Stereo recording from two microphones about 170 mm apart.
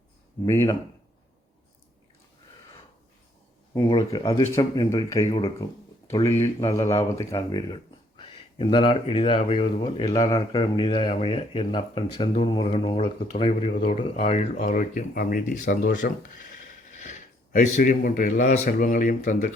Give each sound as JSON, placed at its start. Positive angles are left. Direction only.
{"t": 0.4, "sound": "speech", "side_deg": 15}
{"t": 3.8, "sound": "speech", "side_deg": 25}
{"t": 6.8, "sound": "speech", "side_deg": 40}